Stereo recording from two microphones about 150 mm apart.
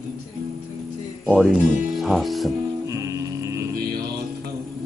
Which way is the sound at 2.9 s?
20° right (ahead or behind).